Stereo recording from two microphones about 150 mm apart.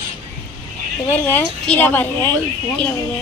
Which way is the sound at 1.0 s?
15° left (ahead or behind).